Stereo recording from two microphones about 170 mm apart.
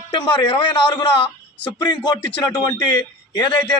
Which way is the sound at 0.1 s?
25° left (ahead or behind).